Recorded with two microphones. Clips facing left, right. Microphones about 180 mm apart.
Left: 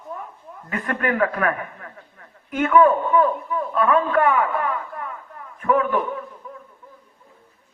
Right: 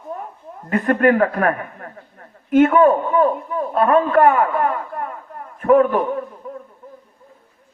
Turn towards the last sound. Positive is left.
turn(degrees=-40)  # may be behind; listen again after turning